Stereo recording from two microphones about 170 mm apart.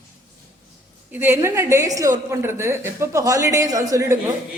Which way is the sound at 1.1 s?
15° right (ahead or behind).